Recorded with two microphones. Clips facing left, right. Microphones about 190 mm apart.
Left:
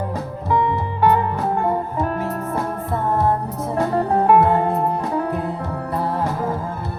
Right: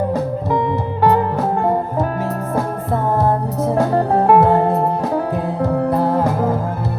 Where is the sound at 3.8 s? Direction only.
40° right (ahead or behind).